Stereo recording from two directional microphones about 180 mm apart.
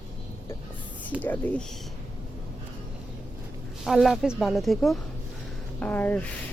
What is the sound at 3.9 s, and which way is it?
A woman's voice, centre (ahead or behind).